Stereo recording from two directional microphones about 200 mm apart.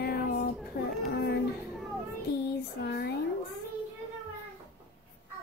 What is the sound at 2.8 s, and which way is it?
Speech, 50° left (ahead or behind).